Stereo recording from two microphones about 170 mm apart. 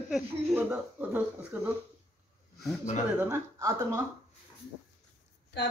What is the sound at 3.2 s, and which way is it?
Speech, 15° right (ahead or behind).